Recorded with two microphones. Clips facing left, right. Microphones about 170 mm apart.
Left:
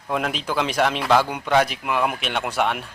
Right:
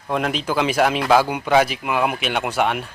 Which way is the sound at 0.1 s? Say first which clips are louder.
Right 3 dB; centre (ahead or behind).